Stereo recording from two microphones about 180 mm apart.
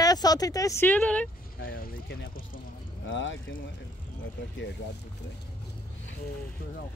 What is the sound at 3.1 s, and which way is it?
Speech, 90° left.